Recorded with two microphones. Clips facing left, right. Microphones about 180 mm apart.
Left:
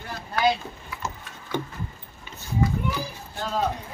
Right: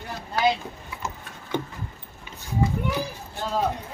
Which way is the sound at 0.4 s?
20° right (ahead or behind).